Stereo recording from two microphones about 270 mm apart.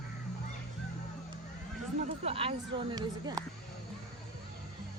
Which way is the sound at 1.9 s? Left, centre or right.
Right.